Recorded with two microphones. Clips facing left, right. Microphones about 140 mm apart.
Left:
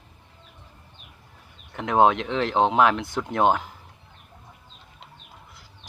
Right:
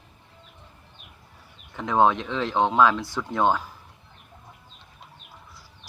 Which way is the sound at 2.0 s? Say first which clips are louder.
Left 2 dB; 65° left (ahead or behind).